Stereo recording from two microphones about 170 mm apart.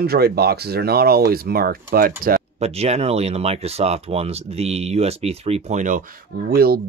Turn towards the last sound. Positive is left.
turn(degrees=-65)  # may be behind; listen again after turning